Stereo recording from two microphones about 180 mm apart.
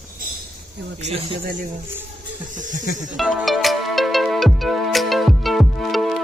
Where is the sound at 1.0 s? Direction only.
35° right (ahead or behind).